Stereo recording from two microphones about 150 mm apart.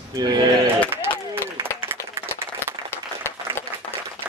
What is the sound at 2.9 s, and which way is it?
Applause, 15° left (ahead or behind).